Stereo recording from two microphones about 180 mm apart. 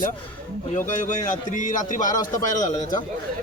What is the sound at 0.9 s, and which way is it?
Speech, 45° left (ahead or behind).